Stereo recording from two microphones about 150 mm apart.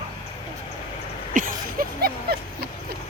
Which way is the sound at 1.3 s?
70° right (ahead or behind).